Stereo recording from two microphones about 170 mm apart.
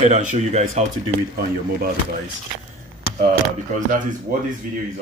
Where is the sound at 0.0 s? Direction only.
45° right (ahead or behind).